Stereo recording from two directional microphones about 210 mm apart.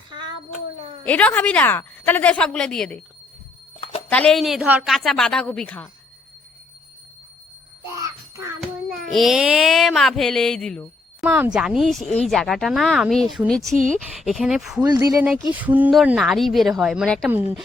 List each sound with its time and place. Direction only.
1.0 s a woman's voice: 5° left (ahead or behind)
4.1 s a woman's voice: 5° left (ahead or behind)
7.9 s jingle bell: 15° right (ahead or behind)
8.6 s child singing: centre (ahead or behind)
11.3 s a woman's voice: 5° right (ahead or behind)